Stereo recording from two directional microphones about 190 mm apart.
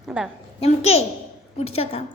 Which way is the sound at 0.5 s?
35° left (ahead or behind).